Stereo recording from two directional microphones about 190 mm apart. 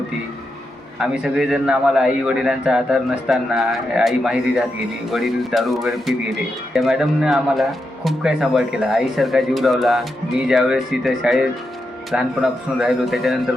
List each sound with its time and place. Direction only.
0.9 s speech: 5° right (ahead or behind)